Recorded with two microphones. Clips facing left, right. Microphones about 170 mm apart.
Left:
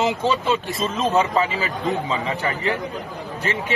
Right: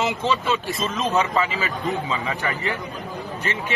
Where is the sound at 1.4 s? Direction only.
35° left (ahead or behind).